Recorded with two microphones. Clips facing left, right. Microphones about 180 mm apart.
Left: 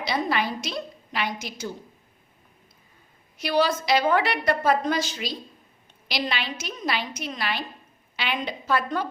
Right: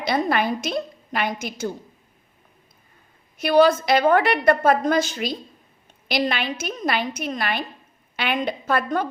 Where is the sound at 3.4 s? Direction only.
50° right (ahead or behind).